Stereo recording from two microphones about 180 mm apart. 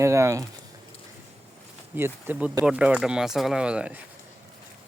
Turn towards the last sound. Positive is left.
turn(degrees=-5)  # may be behind; listen again after turning